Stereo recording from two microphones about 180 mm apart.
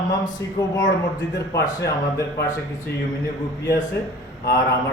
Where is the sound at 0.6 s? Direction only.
20° left (ahead or behind).